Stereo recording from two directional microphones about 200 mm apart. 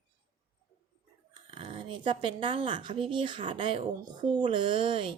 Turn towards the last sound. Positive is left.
turn(degrees=-25)  # may be behind; listen again after turning